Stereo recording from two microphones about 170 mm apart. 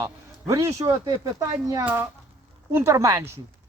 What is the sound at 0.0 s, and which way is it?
Speech, 20° right (ahead or behind).